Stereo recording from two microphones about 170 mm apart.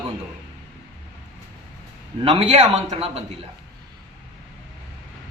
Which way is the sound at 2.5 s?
40° right (ahead or behind).